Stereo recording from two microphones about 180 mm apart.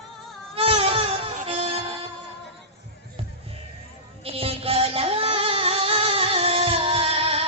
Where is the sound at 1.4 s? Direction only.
35° right (ahead or behind).